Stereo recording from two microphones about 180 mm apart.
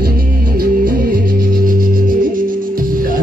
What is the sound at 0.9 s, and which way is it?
Music, 50° right (ahead or behind).